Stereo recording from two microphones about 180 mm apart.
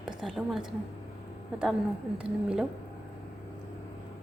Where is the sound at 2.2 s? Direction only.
5° right (ahead or behind).